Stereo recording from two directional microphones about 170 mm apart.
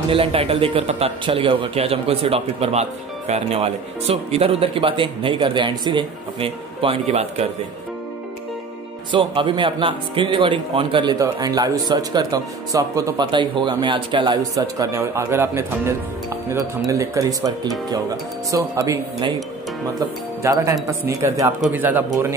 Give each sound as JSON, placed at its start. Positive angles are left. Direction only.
{"t": 0.1, "sound": "a man's voice", "side_deg": -35}
{"t": 9.1, "sound": "speech", "side_deg": -30}
{"t": 20.4, "sound": "speech", "side_deg": -15}
{"t": 21.5, "sound": "speech", "side_deg": -5}